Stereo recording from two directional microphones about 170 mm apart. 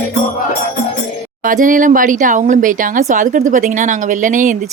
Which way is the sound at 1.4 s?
50° right (ahead or behind).